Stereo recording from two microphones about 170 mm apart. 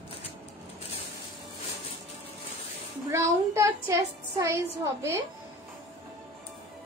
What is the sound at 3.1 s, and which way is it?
A woman's voice, 15° right (ahead or behind).